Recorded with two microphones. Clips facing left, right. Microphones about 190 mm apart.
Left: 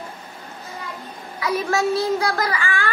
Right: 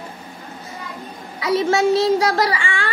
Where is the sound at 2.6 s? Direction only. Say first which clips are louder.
Even; 25° right (ahead or behind).